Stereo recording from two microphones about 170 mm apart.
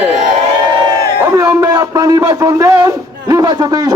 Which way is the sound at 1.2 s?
20° right (ahead or behind).